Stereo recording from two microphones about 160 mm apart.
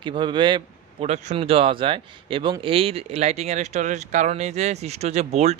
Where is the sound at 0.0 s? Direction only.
30° right (ahead or behind).